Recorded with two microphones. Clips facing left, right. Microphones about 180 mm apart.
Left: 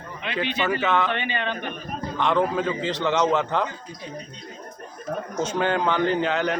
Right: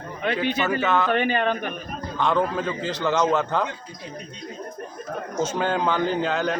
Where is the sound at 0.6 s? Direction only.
Centre (ahead or behind).